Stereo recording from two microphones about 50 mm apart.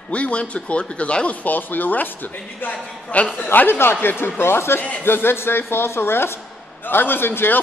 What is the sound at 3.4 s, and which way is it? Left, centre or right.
Speech, left.